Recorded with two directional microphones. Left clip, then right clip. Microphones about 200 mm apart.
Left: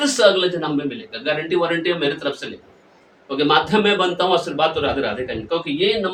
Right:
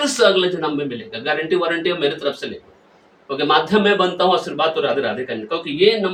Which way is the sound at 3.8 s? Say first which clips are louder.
Right 2 dB; 20° left (ahead or behind).